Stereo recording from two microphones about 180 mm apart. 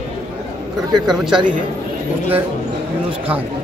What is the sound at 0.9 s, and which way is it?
Speech, 5° right (ahead or behind).